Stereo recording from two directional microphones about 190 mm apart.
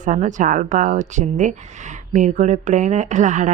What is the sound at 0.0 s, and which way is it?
Speech, 40° right (ahead or behind).